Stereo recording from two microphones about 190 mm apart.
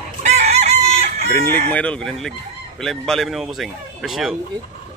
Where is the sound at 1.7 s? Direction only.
5° left (ahead or behind).